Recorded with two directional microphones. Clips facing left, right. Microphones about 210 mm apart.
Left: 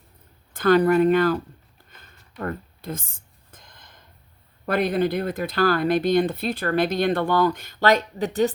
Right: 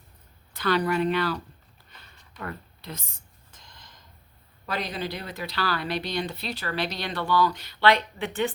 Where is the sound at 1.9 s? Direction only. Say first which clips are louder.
Left 8 dB; 50° left (ahead or behind).